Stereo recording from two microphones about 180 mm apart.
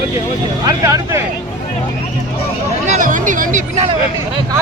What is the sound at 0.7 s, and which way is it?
Speech, 15° right (ahead or behind).